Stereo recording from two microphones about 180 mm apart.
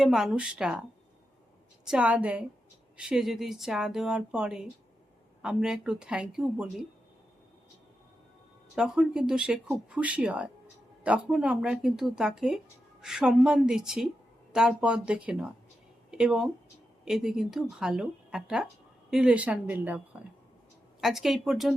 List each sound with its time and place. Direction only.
0.0 s speech: centre (ahead or behind)
1.8 s speech: 5° right (ahead or behind)
8.7 s speech: 5° right (ahead or behind)
21.0 s speech: centre (ahead or behind)